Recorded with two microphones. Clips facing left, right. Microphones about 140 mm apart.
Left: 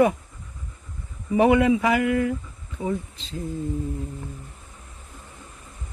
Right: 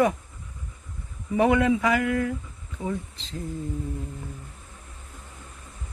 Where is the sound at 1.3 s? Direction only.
15° left (ahead or behind).